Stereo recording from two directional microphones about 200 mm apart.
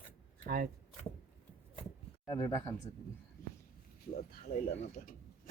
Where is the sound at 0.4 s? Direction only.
45° right (ahead or behind).